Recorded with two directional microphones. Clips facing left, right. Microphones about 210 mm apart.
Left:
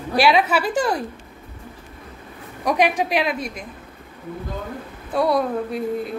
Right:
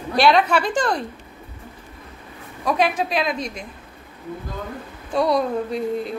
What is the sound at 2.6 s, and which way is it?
A woman's voice, 15° left (ahead or behind).